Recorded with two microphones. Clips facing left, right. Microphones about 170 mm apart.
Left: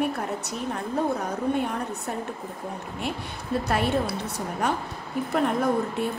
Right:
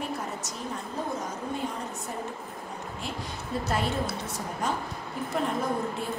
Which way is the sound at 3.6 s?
65° left (ahead or behind).